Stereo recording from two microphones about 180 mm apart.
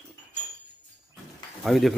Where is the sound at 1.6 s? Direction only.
Centre (ahead or behind).